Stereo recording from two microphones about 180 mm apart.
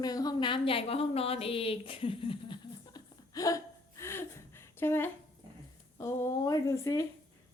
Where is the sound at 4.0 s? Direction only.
15° left (ahead or behind).